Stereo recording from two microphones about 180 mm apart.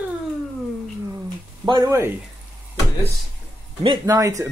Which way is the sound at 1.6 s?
20° right (ahead or behind).